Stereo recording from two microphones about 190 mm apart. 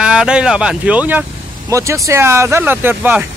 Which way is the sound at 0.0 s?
5° right (ahead or behind).